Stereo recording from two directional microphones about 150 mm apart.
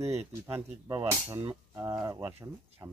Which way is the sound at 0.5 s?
15° right (ahead or behind).